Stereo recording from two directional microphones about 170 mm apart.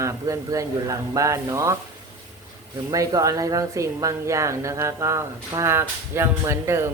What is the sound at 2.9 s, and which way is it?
Speech, 20° right (ahead or behind).